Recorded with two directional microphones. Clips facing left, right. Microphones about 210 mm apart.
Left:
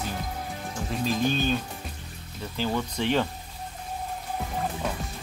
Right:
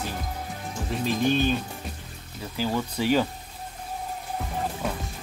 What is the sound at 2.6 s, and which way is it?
Speech, 5° right (ahead or behind).